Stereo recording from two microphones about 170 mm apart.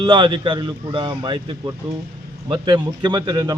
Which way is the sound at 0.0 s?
30° right (ahead or behind).